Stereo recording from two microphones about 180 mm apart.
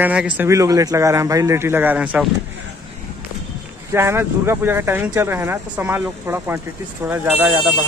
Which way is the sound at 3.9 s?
15° right (ahead or behind).